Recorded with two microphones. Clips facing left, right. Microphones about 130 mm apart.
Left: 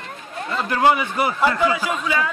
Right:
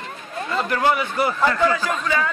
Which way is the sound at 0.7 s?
15° left (ahead or behind).